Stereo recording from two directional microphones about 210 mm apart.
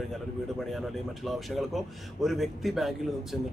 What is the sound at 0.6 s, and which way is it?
A man's voice, centre (ahead or behind).